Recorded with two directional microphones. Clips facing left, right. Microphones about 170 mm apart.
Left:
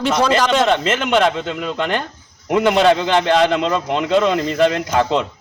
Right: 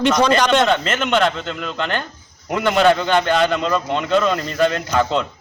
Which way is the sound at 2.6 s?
20° left (ahead or behind).